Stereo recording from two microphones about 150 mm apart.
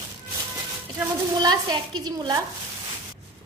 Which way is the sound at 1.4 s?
25° right (ahead or behind).